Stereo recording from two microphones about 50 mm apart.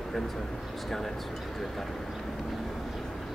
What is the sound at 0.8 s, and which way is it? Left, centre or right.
Speech, centre.